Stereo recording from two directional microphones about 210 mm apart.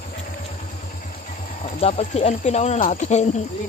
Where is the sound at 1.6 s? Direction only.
30° left (ahead or behind).